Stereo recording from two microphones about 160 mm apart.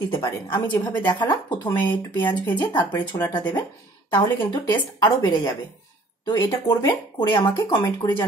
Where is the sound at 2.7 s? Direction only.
25° left (ahead or behind).